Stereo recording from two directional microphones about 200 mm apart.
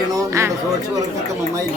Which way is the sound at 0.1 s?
15° right (ahead or behind).